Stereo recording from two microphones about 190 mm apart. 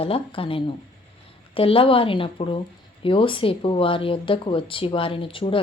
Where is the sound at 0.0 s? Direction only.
30° left (ahead or behind).